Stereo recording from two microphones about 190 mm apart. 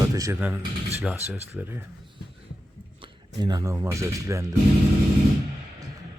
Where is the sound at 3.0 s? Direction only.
20° right (ahead or behind).